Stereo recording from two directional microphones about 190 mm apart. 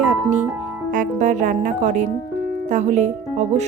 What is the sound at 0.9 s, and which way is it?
Speech, 40° right (ahead or behind).